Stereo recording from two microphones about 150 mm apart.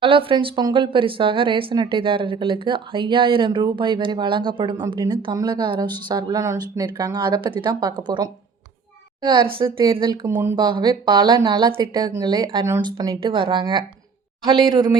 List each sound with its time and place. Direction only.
0.0 s speech: 35° right (ahead or behind)
10.2 s speech: 15° right (ahead or behind)
10.6 s speech: 30° right (ahead or behind)